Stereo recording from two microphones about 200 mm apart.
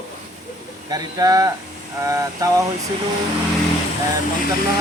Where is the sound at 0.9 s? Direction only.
20° right (ahead or behind).